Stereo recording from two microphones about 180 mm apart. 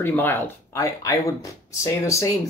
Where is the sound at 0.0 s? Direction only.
10° left (ahead or behind).